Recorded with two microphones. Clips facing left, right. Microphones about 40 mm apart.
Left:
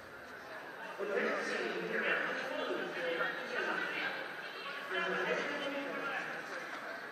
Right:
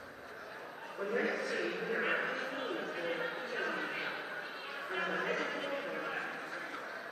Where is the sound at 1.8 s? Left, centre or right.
Centre.